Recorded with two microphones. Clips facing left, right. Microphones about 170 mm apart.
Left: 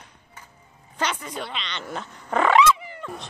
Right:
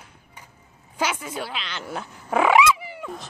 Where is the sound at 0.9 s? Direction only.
5° right (ahead or behind).